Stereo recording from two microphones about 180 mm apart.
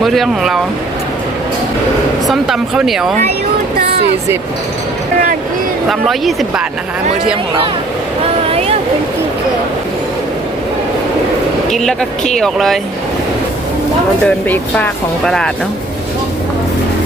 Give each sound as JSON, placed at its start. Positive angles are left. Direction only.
{"t": 0.0, "sound": "speech", "side_deg": 0}
{"t": 2.2, "sound": "speech", "side_deg": 0}
{"t": 5.9, "sound": "speech", "side_deg": 0}
{"t": 8.4, "sound": "a sound", "side_deg": -35}
{"t": 11.9, "sound": "speech", "side_deg": 5}
{"t": 14.3, "sound": "speech", "side_deg": 10}